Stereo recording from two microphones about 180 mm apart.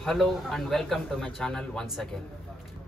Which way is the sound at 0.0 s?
Centre (ahead or behind).